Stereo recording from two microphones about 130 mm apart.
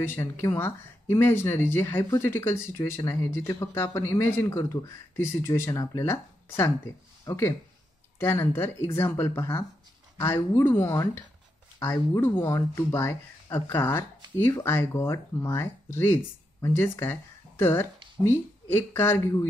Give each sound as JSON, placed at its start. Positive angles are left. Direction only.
{"t": 0.0, "sound": "speech", "side_deg": 20}
{"t": 12.2, "sound": "speech", "side_deg": 20}